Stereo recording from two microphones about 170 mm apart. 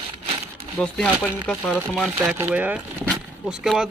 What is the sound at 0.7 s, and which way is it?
Speech, 5° left (ahead or behind).